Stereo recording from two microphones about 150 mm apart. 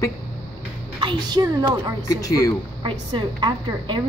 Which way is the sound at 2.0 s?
25° left (ahead or behind).